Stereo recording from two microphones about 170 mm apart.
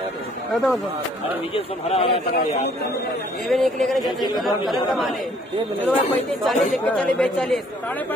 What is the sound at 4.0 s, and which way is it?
Speech, 25° left (ahead or behind).